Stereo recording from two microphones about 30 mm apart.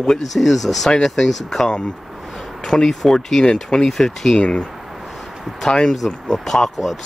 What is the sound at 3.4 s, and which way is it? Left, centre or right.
Speech, left.